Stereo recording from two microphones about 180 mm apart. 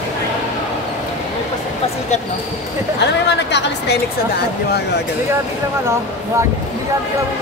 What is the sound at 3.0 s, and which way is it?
A woman's voice, 70° left (ahead or behind).